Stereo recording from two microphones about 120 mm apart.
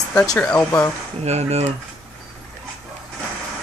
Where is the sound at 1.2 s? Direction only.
65° right (ahead or behind).